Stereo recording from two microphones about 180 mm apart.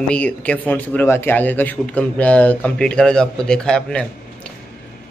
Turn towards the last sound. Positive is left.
turn(degrees=5)  # may be behind; listen again after turning